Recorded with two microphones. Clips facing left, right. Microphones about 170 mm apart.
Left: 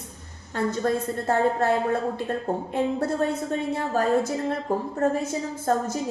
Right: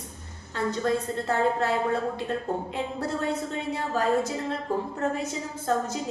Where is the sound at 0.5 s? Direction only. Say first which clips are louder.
Left 2 dB; 50° left (ahead or behind).